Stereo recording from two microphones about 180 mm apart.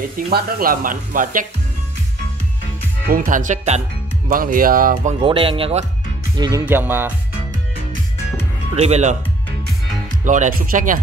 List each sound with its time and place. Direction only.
0.3 s speech: 55° right (ahead or behind)
3.1 s speech: 50° right (ahead or behind)
4.3 s speech: 50° right (ahead or behind)
5.2 s speech: 30° right (ahead or behind)
6.3 s speech: 20° right (ahead or behind)
6.6 s music: 10° right (ahead or behind)
8.7 s speech: 40° right (ahead or behind)
10.2 s speech: 45° right (ahead or behind)